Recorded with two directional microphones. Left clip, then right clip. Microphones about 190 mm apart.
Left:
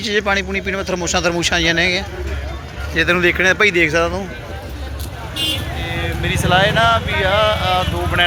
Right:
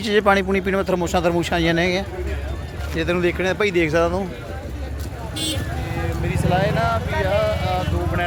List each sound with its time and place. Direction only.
0.0 s speech: 25° right (ahead or behind)
2.9 s speech: 5° right (ahead or behind)
6.2 s speech: centre (ahead or behind)